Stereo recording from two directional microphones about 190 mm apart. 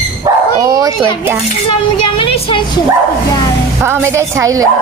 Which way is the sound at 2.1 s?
30° left (ahead or behind).